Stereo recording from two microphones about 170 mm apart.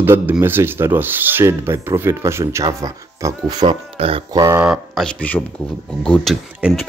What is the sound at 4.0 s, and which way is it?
Speech, 35° right (ahead or behind).